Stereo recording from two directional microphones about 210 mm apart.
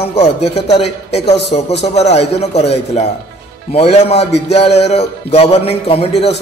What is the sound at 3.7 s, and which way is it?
Music, 30° left (ahead or behind).